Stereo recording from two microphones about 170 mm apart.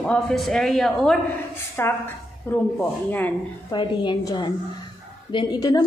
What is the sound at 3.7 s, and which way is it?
A woman's voice, 30° left (ahead or behind).